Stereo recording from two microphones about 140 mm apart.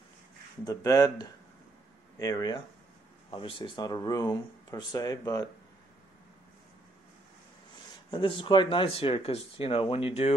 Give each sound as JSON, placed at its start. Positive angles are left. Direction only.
{"t": 0.7, "sound": "speech", "side_deg": 25}
{"t": 8.1, "sound": "speech", "side_deg": 35}